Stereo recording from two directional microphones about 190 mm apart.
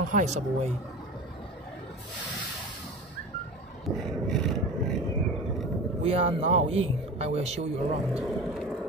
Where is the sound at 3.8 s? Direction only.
Centre (ahead or behind).